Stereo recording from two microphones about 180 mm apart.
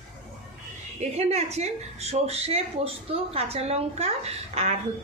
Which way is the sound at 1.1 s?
35° right (ahead or behind).